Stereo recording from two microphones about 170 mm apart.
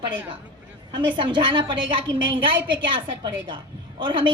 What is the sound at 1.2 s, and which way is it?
Speech, 30° right (ahead or behind).